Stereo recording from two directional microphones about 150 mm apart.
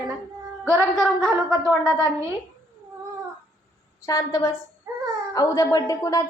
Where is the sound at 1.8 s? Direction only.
20° right (ahead or behind).